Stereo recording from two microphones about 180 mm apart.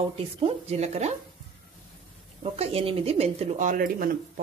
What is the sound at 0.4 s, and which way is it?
Speech, 35° right (ahead or behind).